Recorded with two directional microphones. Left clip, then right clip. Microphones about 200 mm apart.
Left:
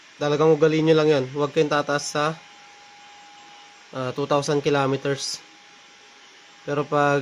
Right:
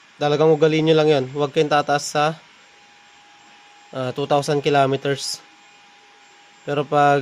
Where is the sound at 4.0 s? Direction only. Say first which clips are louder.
Right 3 dB; 25° right (ahead or behind).